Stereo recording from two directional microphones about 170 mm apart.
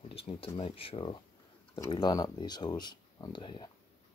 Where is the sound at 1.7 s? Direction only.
20° left (ahead or behind).